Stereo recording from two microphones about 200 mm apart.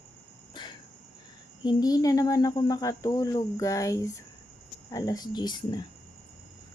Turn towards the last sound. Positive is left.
turn(degrees=20)  # may be behind; listen again after turning